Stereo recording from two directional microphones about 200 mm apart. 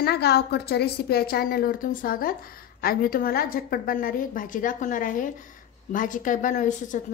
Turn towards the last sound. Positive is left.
turn(degrees=40)  # may be behind; listen again after turning